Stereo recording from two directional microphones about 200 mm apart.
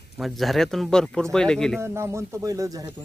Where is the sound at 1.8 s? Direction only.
15° right (ahead or behind).